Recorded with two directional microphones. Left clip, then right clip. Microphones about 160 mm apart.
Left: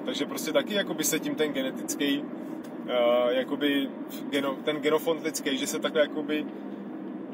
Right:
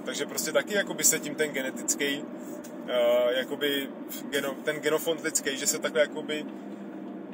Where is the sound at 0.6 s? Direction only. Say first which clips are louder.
Even; centre (ahead or behind).